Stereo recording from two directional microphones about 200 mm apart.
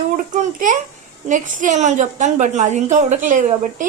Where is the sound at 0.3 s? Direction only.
40° right (ahead or behind).